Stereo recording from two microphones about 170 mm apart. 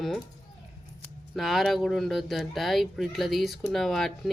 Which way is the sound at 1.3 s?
Centre (ahead or behind).